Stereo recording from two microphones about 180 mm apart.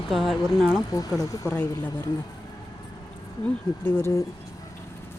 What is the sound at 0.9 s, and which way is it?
Speech, 20° left (ahead or behind).